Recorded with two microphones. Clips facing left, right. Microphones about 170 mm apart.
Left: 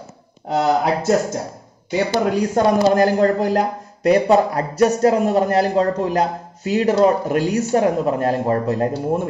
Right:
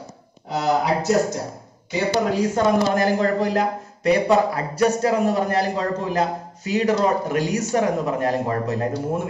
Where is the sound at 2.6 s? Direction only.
45° left (ahead or behind).